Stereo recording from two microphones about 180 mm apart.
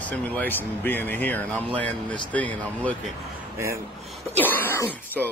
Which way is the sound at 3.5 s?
15° right (ahead or behind).